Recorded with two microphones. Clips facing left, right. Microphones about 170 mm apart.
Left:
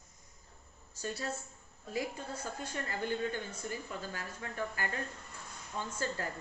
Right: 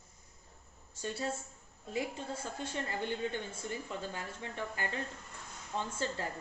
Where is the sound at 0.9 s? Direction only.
25° right (ahead or behind).